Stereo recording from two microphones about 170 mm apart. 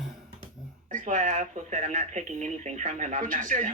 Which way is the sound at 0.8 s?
45° right (ahead or behind).